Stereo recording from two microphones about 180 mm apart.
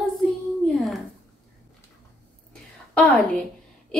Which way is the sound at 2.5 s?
5° left (ahead or behind).